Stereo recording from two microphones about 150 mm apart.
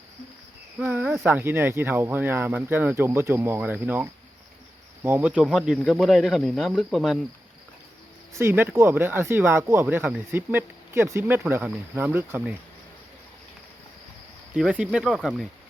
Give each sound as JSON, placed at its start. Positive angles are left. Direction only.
{"t": 0.8, "sound": "speech", "side_deg": -10}
{"t": 8.4, "sound": "speech", "side_deg": -15}
{"t": 14.5, "sound": "speech", "side_deg": -5}